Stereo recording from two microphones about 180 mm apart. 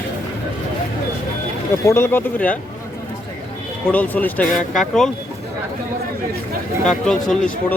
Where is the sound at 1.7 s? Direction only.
15° left (ahead or behind).